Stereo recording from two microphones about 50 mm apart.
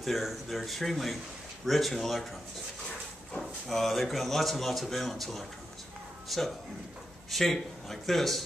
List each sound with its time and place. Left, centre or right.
0.0 s speech: centre
3.3 s speech: centre